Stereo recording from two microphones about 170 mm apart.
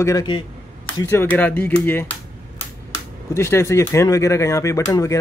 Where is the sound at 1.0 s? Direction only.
10° left (ahead or behind).